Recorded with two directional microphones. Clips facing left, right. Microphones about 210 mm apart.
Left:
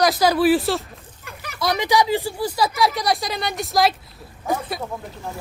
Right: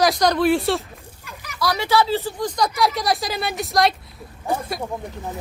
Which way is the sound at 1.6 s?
20° left (ahead or behind).